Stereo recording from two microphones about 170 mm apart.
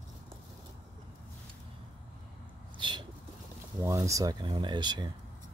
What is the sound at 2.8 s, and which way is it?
Bird, 30° right (ahead or behind).